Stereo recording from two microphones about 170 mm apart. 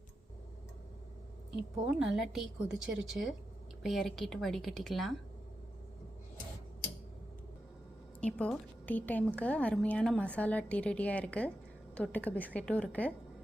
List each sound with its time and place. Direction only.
1.9 s a woman's voice: 5° right (ahead or behind)
8.2 s a woman's voice: 10° left (ahead or behind)